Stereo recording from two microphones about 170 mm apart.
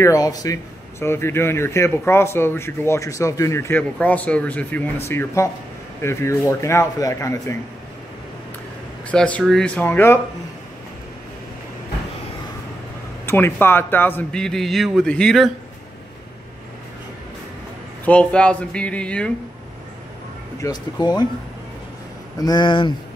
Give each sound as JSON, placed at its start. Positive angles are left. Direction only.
{"t": 0.0, "sound": "speech", "side_deg": 20}
{"t": 9.1, "sound": "speech", "side_deg": 5}
{"t": 13.2, "sound": "a man's voice", "side_deg": 15}
{"t": 18.0, "sound": "speech", "side_deg": 5}
{"t": 20.6, "sound": "speech", "side_deg": 25}
{"t": 22.4, "sound": "speech", "side_deg": 25}